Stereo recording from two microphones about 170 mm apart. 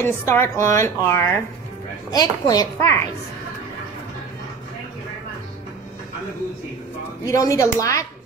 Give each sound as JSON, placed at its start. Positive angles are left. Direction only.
{"t": 0.0, "sound": "a woman's voice", "side_deg": 15}
{"t": 7.2, "sound": "a woman's voice", "side_deg": 20}